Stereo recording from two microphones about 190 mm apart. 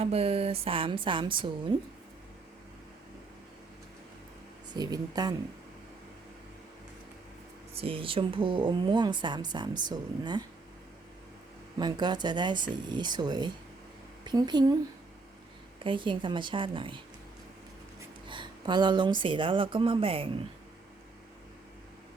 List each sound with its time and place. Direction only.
0.0 s speech: 30° right (ahead or behind)
4.7 s speech: 20° right (ahead or behind)
7.7 s speech: 30° right (ahead or behind)
11.8 s speech: 20° right (ahead or behind)
15.8 s speech: 25° right (ahead or behind)
18.3 s speech: 25° right (ahead or behind)